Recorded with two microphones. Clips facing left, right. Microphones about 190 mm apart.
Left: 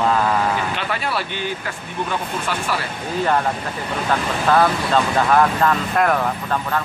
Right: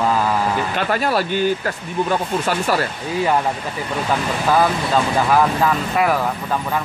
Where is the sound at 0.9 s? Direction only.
40° right (ahead or behind).